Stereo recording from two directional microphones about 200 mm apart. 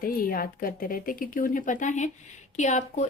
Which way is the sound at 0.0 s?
45° left (ahead or behind).